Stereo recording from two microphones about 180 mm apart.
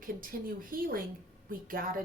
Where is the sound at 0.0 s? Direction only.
50° right (ahead or behind).